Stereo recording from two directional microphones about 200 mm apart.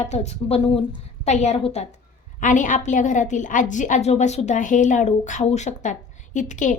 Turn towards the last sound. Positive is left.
turn(degrees=40)  # may be behind; listen again after turning